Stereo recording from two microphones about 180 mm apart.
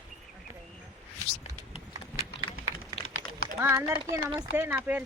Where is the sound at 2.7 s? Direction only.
25° left (ahead or behind).